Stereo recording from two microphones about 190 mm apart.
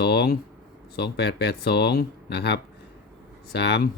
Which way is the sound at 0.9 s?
60° left (ahead or behind).